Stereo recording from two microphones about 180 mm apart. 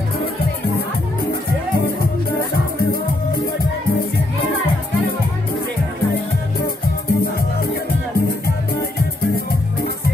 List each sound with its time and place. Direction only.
2.5 s music: 60° left (ahead or behind)
7.1 s music: 60° left (ahead or behind)